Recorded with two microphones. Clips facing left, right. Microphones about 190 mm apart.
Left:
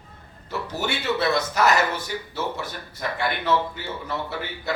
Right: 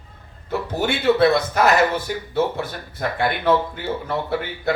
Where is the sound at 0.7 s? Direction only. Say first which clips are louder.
Right 8 dB; 55° right (ahead or behind).